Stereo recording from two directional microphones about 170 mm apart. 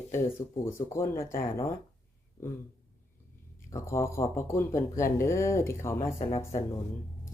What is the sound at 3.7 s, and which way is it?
Speech, 15° left (ahead or behind).